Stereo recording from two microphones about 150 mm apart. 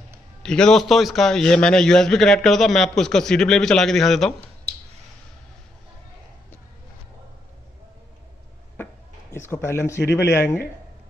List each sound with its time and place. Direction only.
0.4 s a man's voice: 5° left (ahead or behind)
9.3 s speech: 15° left (ahead or behind)